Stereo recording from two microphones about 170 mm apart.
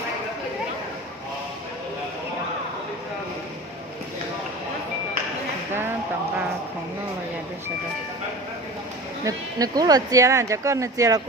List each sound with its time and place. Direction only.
9.2 s speech: 20° right (ahead or behind)